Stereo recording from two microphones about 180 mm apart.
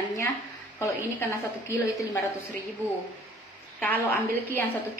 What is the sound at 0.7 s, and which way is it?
A woman's voice, 15° left (ahead or behind).